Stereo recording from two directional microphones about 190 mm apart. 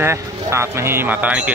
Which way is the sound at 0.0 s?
15° right (ahead or behind).